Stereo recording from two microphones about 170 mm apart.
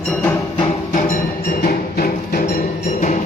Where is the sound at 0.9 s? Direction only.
50° left (ahead or behind).